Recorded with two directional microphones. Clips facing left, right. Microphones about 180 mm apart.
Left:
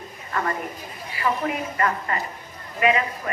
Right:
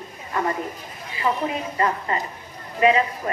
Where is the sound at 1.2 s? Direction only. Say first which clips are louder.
Right 1 dB; 20° right (ahead or behind).